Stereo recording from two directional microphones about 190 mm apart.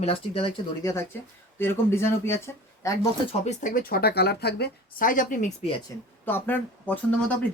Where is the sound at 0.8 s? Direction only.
15° left (ahead or behind).